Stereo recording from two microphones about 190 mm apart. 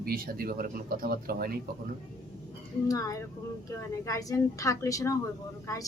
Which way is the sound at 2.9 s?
20° left (ahead or behind).